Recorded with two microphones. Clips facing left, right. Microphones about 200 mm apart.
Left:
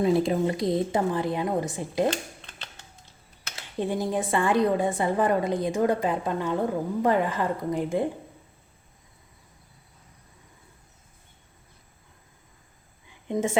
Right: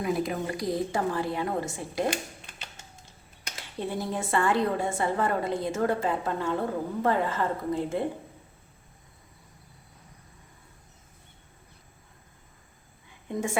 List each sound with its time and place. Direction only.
0.0 s a woman's voice: 30° left (ahead or behind)
2.0 s a sound: 10° right (ahead or behind)
3.8 s a woman's voice: 15° left (ahead or behind)
13.2 s a woman's voice: 20° left (ahead or behind)